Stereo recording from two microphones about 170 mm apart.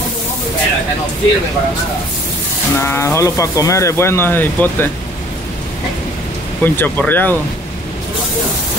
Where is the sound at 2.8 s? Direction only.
15° left (ahead or behind).